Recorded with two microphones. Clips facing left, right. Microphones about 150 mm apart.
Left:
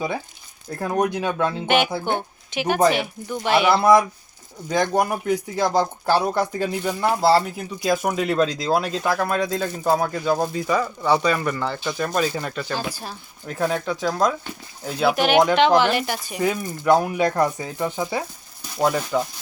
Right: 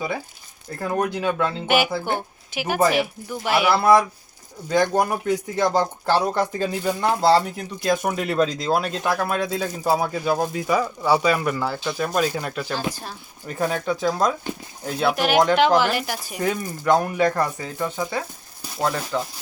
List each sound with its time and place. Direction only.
0.8 s speech: 15° left (ahead or behind)
1.6 s speech: 5° right (ahead or behind)
4.7 s speech: 10° left (ahead or behind)